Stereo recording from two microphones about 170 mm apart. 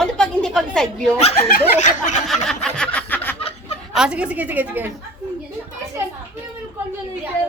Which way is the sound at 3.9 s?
5° right (ahead or behind).